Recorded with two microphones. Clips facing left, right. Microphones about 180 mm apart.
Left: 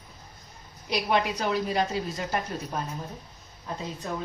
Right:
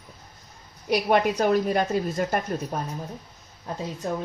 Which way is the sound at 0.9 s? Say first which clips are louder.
Right 5 dB; 50° right (ahead or behind).